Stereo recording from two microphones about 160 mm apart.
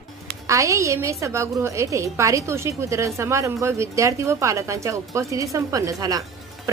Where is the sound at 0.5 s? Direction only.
20° right (ahead or behind).